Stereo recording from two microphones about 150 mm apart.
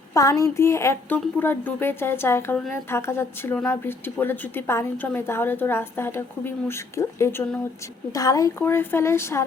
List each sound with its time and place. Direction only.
0.1 s a woman's voice: 20° left (ahead or behind)